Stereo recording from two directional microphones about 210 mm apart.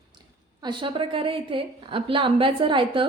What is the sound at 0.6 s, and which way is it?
A woman's voice, 20° right (ahead or behind).